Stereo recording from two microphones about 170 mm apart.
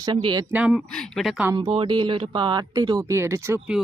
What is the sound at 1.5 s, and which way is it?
Speech, 30° right (ahead or behind).